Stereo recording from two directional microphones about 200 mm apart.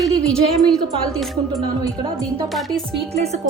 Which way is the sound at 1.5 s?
15° right (ahead or behind).